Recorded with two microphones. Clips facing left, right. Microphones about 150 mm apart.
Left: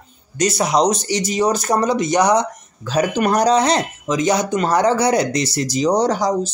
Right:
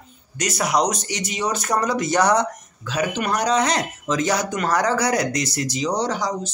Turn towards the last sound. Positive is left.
turn(degrees=40)  # may be behind; listen again after turning